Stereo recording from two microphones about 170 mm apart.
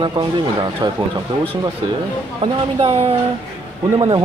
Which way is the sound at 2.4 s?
35° right (ahead or behind).